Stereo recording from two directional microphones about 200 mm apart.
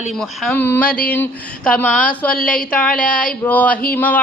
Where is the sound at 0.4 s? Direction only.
10° left (ahead or behind).